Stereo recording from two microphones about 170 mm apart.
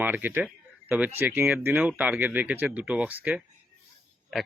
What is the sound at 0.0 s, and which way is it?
A man's voice, 10° right (ahead or behind).